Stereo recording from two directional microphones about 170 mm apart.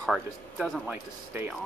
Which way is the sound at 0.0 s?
Centre (ahead or behind).